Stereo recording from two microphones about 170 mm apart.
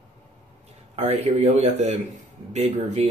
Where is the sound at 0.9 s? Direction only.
40° right (ahead or behind).